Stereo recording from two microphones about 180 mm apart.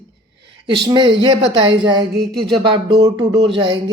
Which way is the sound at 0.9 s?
25° right (ahead or behind).